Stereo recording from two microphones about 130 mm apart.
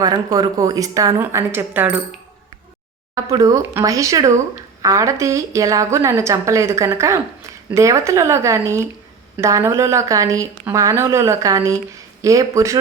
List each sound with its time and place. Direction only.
0.0 s a woman's voice: 30° right (ahead or behind)
3.2 s a woman's voice: 25° right (ahead or behind)